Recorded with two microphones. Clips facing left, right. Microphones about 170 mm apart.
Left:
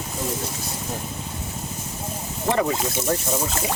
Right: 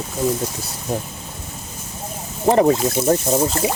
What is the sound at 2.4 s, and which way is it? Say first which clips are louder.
Speech: right 8 dB; 40° right (ahead or behind).